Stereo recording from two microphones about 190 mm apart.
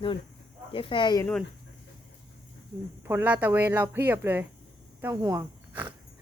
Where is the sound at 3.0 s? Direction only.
10° right (ahead or behind).